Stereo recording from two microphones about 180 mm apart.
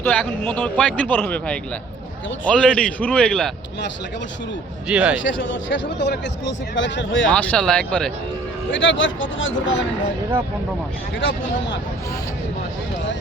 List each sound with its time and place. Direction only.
0.0 s a man's voice: 10° left (ahead or behind)
4.9 s a man's voice: 5° right (ahead or behind)
5.2 s speech: 90° left
7.3 s a man's voice: 5° left (ahead or behind)
8.7 s speech: 90° left
11.2 s speech: 90° left